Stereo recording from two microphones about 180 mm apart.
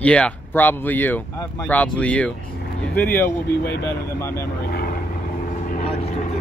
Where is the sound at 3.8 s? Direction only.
15° left (ahead or behind).